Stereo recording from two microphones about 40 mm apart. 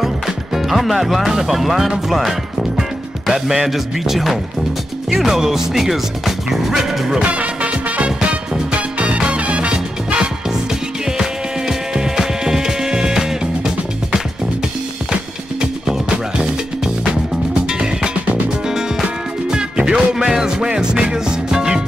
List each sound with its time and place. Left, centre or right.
0.6 s speech: centre
7.2 s music: right
11.1 s music: centre
15.6 s music: centre